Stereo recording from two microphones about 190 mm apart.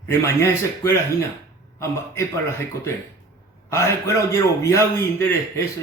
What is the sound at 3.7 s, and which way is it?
A man's voice, 15° left (ahead or behind).